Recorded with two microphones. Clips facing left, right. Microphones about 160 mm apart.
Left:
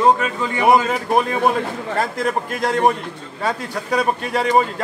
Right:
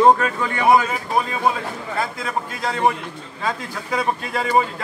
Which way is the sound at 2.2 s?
55° left (ahead or behind).